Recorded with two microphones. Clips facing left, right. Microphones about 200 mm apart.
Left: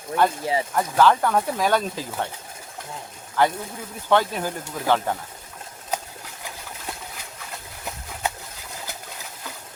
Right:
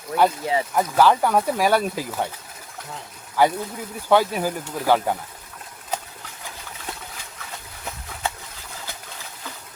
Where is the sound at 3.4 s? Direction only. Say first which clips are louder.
Right 2 dB; 10° right (ahead or behind).